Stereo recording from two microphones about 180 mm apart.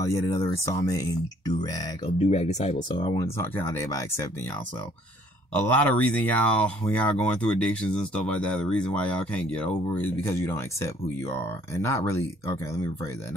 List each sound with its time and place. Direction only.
0.0 s speech: 15° left (ahead or behind)
2.1 s speech: 40° left (ahead or behind)
2.9 s speech: 25° left (ahead or behind)
3.3 s speech: 15° left (ahead or behind)
5.5 s speech: 10° left (ahead or behind)